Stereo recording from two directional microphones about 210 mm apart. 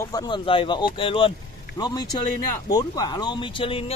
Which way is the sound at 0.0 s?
15° left (ahead or behind).